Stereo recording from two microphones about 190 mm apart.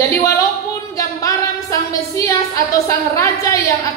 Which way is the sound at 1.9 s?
15° left (ahead or behind).